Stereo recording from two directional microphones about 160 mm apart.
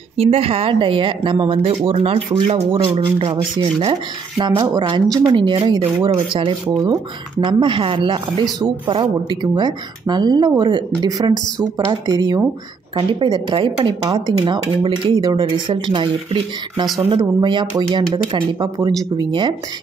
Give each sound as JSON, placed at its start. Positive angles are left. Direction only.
{"t": 0.2, "sound": "speech", "side_deg": -35}